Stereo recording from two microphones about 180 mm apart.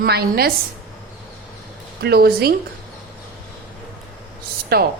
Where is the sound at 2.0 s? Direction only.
60° right (ahead or behind).